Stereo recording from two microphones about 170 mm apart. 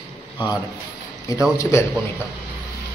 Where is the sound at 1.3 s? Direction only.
20° left (ahead or behind).